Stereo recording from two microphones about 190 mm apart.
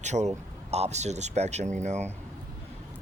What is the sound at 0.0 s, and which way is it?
Speech, 35° right (ahead or behind).